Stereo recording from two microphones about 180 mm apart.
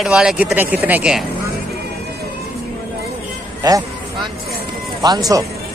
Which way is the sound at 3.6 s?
20° right (ahead or behind).